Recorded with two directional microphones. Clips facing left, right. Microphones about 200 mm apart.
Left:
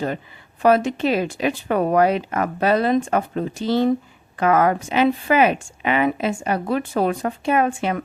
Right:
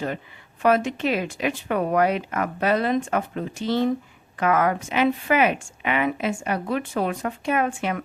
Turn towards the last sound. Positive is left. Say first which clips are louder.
# left 4 dB
turn(degrees=30)  # may be behind; listen again after turning